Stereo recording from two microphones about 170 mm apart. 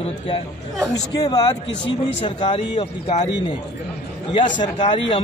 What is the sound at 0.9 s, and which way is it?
Speech, 20° left (ahead or behind).